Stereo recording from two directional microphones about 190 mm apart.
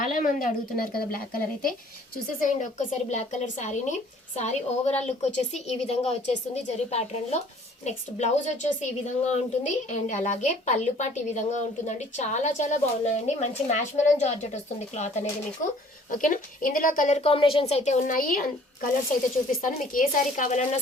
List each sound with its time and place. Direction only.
0.0 s a woman's voice: 45° left (ahead or behind)